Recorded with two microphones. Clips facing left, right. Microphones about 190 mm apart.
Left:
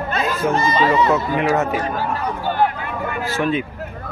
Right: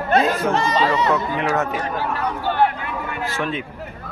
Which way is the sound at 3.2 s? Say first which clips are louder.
Left 5 dB; 5° left (ahead or behind).